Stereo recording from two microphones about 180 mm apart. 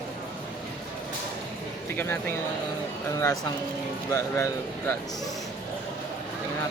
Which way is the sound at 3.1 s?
15° left (ahead or behind).